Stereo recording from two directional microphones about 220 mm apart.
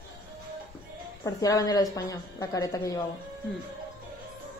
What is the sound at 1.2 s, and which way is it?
Speech, 15° left (ahead or behind).